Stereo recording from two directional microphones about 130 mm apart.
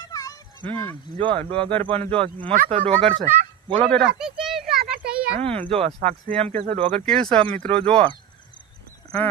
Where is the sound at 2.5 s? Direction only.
80° right.